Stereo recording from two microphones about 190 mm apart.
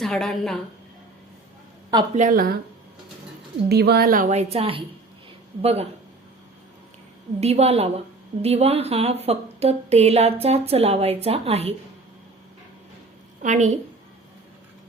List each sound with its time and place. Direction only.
0.0 s a woman's voice: centre (ahead or behind)
2.1 s speech: 45° right (ahead or behind)
3.7 s a woman's voice: 60° right (ahead or behind); by 5.9 s 35° right (ahead or behind)
7.3 s a woman's voice: 35° right (ahead or behind)
13.4 s a woman's voice: 40° right (ahead or behind)